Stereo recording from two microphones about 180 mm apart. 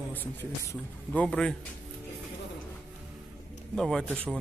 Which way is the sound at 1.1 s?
5° left (ahead or behind).